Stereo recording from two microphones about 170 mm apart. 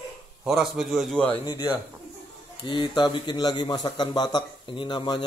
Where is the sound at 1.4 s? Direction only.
20° left (ahead or behind).